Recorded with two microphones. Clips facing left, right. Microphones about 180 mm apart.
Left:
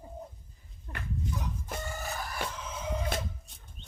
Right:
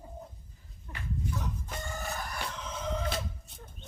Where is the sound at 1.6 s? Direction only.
Centre (ahead or behind).